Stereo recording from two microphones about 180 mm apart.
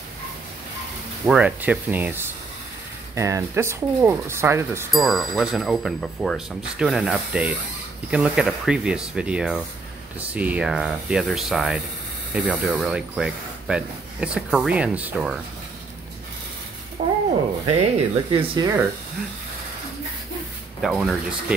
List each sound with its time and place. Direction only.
1.2 s speech: 10° right (ahead or behind)
4.9 s speech: centre (ahead or behind)
17.6 s speech: 30° right (ahead or behind)
20.8 s speech: centre (ahead or behind)